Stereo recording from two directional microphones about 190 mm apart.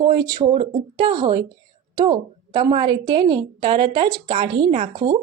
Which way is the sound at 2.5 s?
20° right (ahead or behind).